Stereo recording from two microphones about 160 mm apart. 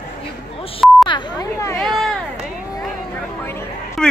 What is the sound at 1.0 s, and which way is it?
Speech, 25° left (ahead or behind).